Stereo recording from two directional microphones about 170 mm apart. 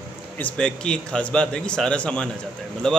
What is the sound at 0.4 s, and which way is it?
Speech, 5° left (ahead or behind).